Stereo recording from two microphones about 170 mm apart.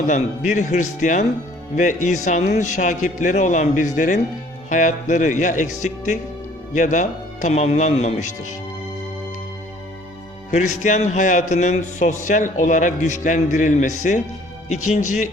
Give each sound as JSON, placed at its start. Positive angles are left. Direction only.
{"t": 0.1, "sound": "speech", "side_deg": 45}
{"t": 6.7, "sound": "speech", "side_deg": 45}
{"t": 10.5, "sound": "speech", "side_deg": 45}